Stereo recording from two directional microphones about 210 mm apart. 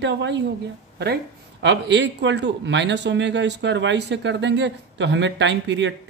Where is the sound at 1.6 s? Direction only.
55° right (ahead or behind).